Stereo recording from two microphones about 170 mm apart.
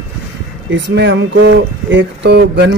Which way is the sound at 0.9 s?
90° right.